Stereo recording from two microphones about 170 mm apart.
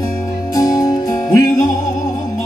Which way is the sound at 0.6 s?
20° left (ahead or behind).